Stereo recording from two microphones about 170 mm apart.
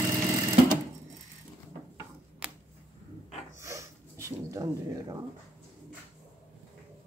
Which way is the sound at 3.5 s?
15° right (ahead or behind).